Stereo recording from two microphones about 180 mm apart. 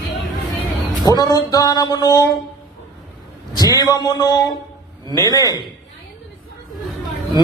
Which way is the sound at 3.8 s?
20° left (ahead or behind).